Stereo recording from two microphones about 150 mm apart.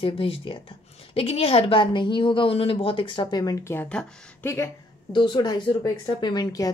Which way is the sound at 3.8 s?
5° left (ahead or behind).